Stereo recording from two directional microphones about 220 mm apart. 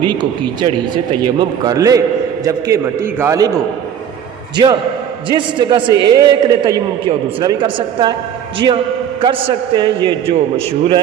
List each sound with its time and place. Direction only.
0.0 s a man's voice: 20° right (ahead or behind)
4.5 s a man's voice: 20° right (ahead or behind)